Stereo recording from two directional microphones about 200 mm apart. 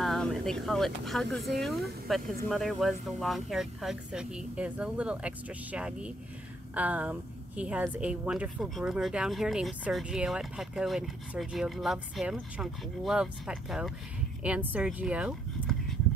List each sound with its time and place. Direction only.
0.0 s a woman's voice: centre (ahead or behind)